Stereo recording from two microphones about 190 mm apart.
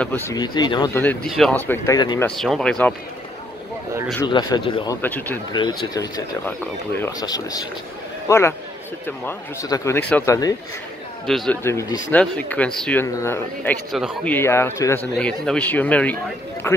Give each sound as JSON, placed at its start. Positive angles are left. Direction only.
{"t": 0.0, "sound": "speech", "side_deg": 10}
{"t": 0.4, "sound": "speech", "side_deg": 20}
{"t": 1.3, "sound": "speech", "side_deg": 5}
{"t": 2.0, "sound": "speech", "side_deg": 20}
{"t": 2.2, "sound": "speech", "side_deg": 0}
{"t": 4.3, "sound": "speech", "side_deg": 25}
{"t": 5.0, "sound": "speech", "side_deg": 10}
{"t": 5.5, "sound": "speech", "side_deg": 25}
{"t": 11.2, "sound": "speech", "side_deg": 0}
{"t": 11.6, "sound": "speech", "side_deg": 15}
{"t": 13.9, "sound": "speech", "side_deg": 0}
{"t": 14.3, "sound": "speech", "side_deg": 15}